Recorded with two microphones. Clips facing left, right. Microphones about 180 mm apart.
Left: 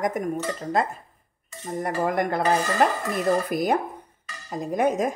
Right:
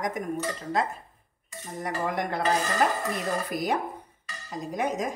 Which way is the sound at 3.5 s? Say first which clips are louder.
Left 5 dB; 55° left (ahead or behind).